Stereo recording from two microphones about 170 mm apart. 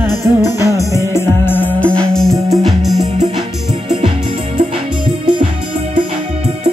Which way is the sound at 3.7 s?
30° right (ahead or behind).